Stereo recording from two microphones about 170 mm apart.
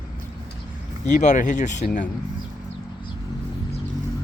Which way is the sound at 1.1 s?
45° left (ahead or behind).